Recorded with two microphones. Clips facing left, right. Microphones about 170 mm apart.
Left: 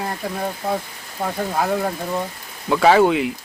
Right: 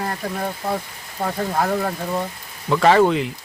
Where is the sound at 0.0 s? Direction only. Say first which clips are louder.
Even; 5° left (ahead or behind).